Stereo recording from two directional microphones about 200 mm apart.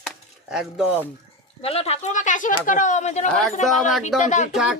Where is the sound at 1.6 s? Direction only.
30° left (ahead or behind).